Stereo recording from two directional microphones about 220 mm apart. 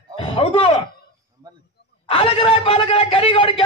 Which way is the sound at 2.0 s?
25° left (ahead or behind).